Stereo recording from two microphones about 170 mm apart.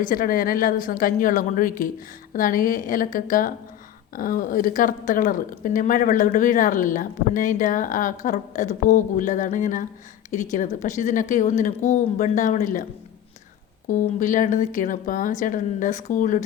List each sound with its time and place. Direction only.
0.0 s a woman's voice: 55° left (ahead or behind)